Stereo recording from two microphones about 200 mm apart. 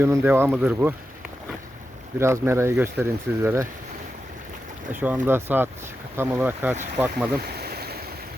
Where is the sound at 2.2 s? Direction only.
15° right (ahead or behind).